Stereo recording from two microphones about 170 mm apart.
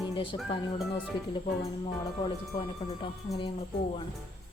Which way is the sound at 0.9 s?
30° left (ahead or behind).